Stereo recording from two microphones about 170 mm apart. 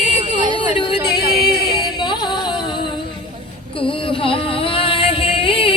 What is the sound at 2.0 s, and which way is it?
Music, 25° left (ahead or behind).